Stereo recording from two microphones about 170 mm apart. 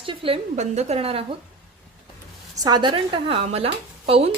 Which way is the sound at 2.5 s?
25° right (ahead or behind).